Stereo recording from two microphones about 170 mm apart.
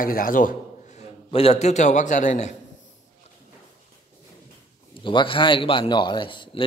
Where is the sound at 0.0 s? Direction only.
55° left (ahead or behind).